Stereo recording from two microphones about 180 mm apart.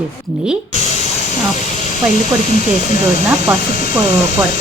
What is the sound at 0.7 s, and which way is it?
Spray, 40° left (ahead or behind).